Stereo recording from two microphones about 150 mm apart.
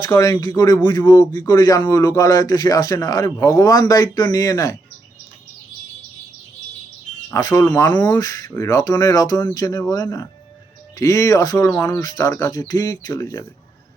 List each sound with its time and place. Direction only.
0.0 s speech: 25° left (ahead or behind)
7.3 s speech: 20° left (ahead or behind)